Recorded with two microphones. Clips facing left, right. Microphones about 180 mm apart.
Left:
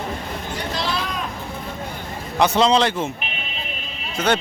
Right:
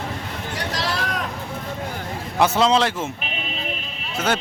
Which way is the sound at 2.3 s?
5° right (ahead or behind).